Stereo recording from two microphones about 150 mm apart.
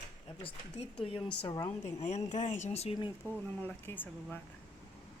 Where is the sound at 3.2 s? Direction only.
15° left (ahead or behind).